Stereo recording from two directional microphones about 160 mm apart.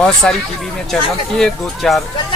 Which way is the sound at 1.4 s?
Centre (ahead or behind).